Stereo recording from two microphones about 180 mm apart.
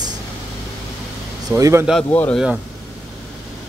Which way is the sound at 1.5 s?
15° right (ahead or behind).